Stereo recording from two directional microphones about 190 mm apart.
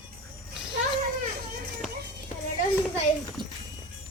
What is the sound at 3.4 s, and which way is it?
Music, 25° right (ahead or behind).